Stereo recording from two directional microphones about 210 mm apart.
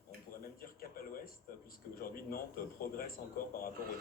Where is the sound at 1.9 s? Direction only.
45° left (ahead or behind).